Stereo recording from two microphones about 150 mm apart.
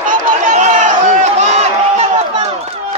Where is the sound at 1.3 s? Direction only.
50° right (ahead or behind).